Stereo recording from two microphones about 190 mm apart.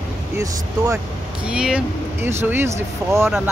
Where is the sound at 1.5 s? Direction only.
5° right (ahead or behind).